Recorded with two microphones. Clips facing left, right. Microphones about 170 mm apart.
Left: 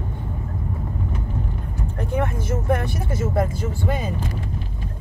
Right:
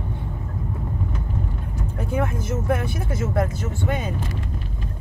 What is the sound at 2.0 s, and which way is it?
Speech, centre (ahead or behind).